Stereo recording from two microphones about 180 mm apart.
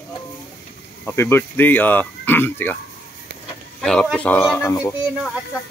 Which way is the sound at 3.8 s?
5° left (ahead or behind).